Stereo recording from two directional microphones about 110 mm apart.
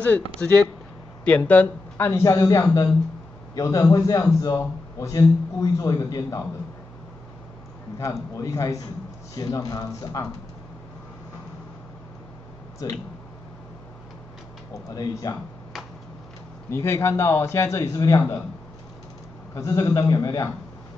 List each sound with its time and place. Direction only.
0.4 s a man's voice: 10° left (ahead or behind); by 6.4 s 30° left (ahead or behind)
8.0 s a man's voice: 30° left (ahead or behind)
14.7 s a man's voice: 35° left (ahead or behind)
16.7 s a man's voice: 25° left (ahead or behind)
19.5 s a man's voice: 30° left (ahead or behind)